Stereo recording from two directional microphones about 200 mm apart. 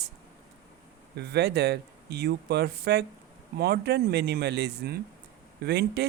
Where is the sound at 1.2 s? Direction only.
55° right (ahead or behind).